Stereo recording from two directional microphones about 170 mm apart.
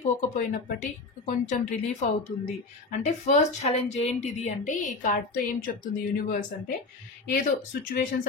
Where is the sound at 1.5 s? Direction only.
45° left (ahead or behind).